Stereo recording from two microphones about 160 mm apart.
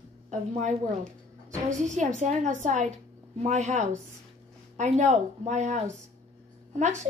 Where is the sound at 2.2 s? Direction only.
50° right (ahead or behind).